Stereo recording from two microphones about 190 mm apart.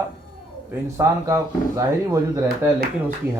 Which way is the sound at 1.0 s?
15° right (ahead or behind).